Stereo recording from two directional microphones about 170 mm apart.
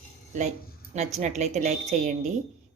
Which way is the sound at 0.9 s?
40° right (ahead or behind).